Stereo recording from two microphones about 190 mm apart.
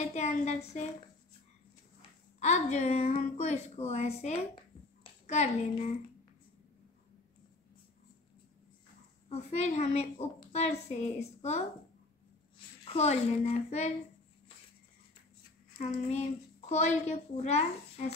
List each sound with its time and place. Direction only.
0.1 s a child's voice: 35° left (ahead or behind)
2.0 s a woman's voice: 35° left (ahead or behind)
9.3 s a child's voice: 35° left (ahead or behind)
12.8 s a child's voice: 35° left (ahead or behind)
15.8 s a child's voice: 35° left (ahead or behind)